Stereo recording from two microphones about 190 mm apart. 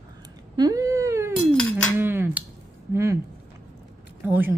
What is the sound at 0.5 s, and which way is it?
Cat, 20° right (ahead or behind).